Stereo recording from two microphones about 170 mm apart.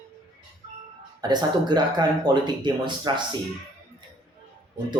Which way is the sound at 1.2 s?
25° right (ahead or behind).